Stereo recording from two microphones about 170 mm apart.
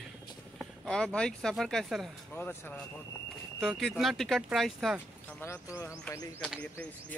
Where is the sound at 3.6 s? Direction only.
Centre (ahead or behind).